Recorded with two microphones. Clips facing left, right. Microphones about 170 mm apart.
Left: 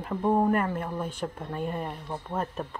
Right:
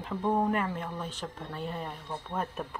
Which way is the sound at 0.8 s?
10° left (ahead or behind).